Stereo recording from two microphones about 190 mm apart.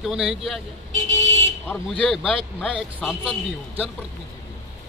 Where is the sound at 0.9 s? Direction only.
80° right.